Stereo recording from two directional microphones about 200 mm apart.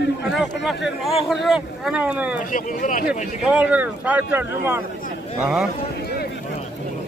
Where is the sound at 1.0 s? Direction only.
Centre (ahead or behind).